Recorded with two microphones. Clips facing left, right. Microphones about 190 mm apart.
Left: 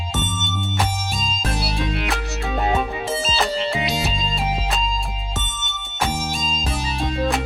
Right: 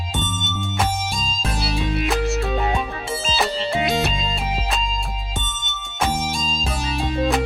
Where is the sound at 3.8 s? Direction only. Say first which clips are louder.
Right 3 dB; 55° right (ahead or behind).